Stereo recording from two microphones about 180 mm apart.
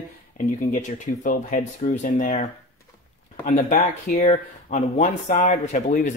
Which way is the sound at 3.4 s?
45° left (ahead or behind).